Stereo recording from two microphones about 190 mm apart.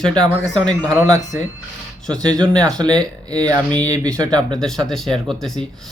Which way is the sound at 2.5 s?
20° right (ahead or behind).